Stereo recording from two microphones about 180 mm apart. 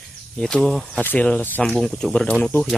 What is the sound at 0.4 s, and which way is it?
Speech, 5° left (ahead or behind).